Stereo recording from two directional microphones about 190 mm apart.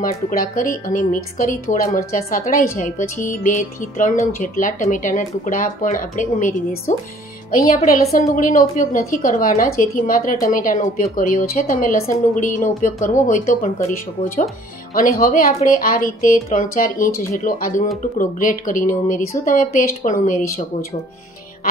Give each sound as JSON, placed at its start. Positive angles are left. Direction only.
{"t": 0.0, "sound": "speech", "side_deg": 50}